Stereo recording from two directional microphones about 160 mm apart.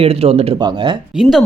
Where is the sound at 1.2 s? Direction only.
Centre (ahead or behind).